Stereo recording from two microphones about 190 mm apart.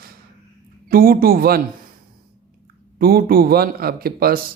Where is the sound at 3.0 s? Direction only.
55° right (ahead or behind).